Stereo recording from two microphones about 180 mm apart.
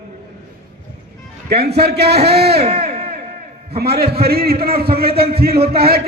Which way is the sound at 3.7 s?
60° right (ahead or behind).